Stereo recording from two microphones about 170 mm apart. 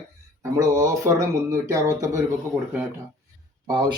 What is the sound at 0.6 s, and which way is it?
Speech, 20° right (ahead or behind).